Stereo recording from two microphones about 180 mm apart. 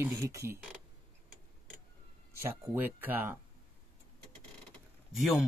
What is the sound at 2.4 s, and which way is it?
Speech, 10° right (ahead or behind).